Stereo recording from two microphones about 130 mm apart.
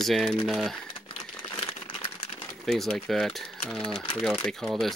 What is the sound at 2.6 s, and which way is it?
Speech, centre (ahead or behind).